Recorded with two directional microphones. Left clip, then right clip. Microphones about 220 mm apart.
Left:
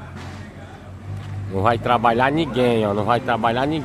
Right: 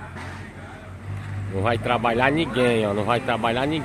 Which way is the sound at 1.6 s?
10° left (ahead or behind).